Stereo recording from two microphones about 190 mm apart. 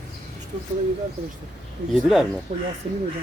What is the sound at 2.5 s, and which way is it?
Speech, 35° right (ahead or behind).